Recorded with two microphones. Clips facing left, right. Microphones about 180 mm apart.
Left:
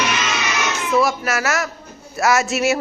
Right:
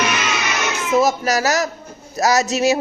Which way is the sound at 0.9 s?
40° right (ahead or behind).